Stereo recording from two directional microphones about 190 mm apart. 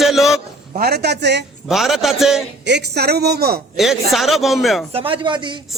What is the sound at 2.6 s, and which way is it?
Speech, 65° right (ahead or behind).